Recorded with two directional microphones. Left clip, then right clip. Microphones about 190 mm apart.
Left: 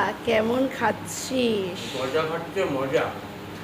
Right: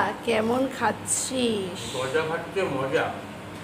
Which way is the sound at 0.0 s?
5° left (ahead or behind).